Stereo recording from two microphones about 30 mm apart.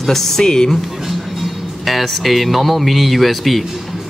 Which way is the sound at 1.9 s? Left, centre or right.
Centre.